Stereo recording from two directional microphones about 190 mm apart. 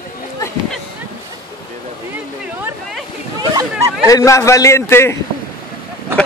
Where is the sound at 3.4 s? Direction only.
20° right (ahead or behind).